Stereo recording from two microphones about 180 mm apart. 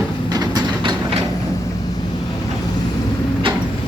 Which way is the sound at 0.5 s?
25° right (ahead or behind).